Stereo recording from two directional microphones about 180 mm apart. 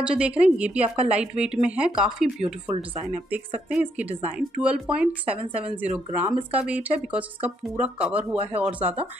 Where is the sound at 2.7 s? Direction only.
35° right (ahead or behind).